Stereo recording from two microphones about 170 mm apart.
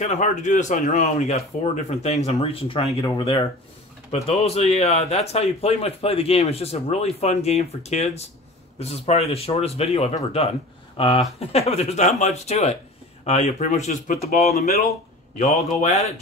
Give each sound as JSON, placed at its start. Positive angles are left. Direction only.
{"t": 0.0, "sound": "speech", "side_deg": 45}
{"t": 4.1, "sound": "speech", "side_deg": 40}
{"t": 15.3, "sound": "a man's voice", "side_deg": 45}